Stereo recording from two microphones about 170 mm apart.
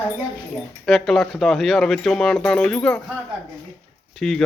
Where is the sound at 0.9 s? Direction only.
Centre (ahead or behind).